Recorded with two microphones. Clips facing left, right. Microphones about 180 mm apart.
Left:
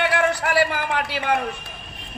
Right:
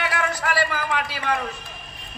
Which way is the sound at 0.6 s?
60° left (ahead or behind).